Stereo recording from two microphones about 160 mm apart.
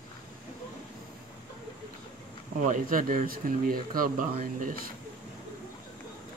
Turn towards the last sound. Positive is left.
turn(degrees=-60)  # may be behind; listen again after turning